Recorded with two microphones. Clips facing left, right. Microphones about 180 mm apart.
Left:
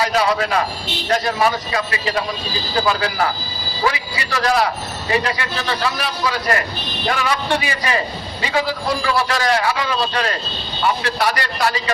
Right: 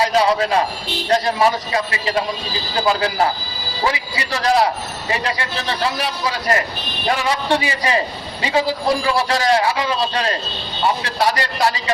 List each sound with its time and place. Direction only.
0.0 s a man's voice: 30° right (ahead or behind)